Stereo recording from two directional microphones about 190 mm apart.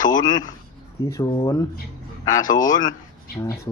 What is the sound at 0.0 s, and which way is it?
A man's voice, 20° left (ahead or behind).